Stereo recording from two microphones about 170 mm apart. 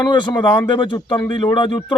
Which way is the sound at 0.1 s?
25° left (ahead or behind).